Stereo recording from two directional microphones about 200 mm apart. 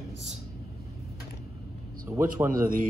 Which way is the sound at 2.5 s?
45° right (ahead or behind).